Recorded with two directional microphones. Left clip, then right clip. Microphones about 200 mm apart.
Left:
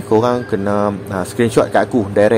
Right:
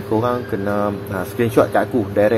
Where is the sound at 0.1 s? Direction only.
25° left (ahead or behind).